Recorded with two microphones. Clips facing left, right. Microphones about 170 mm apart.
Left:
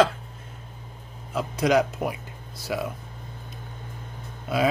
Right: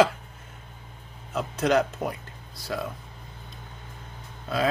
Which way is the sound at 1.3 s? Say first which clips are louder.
Left 2 dB; 10° left (ahead or behind).